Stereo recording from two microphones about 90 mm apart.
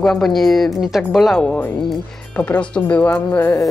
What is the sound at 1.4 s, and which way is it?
A woman's voice, 10° left (ahead or behind).